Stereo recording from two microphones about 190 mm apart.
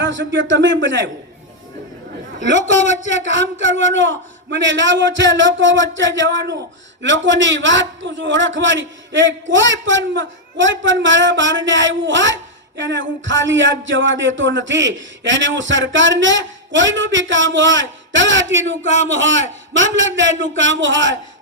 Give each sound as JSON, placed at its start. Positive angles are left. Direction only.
{"t": 0.0, "sound": "a man's voice", "side_deg": -80}
{"t": 2.6, "sound": "a man's voice", "side_deg": 40}
{"t": 3.2, "sound": "a man's voice", "side_deg": -75}